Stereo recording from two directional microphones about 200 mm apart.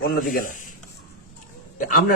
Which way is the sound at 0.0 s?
50° left (ahead or behind).